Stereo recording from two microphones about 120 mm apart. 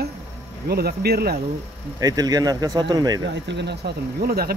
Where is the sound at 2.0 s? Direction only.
30° right (ahead or behind).